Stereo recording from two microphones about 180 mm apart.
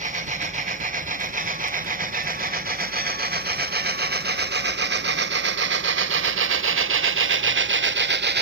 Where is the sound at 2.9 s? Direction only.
60° right (ahead or behind).